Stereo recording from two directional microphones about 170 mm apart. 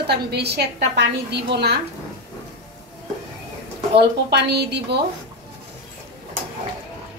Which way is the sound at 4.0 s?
75° right (ahead or behind).